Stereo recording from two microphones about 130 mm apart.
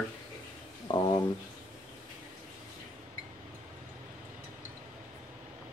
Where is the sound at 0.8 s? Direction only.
35° left (ahead or behind).